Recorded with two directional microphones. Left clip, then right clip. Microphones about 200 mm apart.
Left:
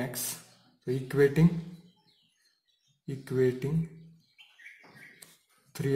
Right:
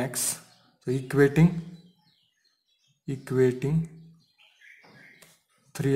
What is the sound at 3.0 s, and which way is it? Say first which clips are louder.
Speech: right 4 dB; 35° right (ahead or behind).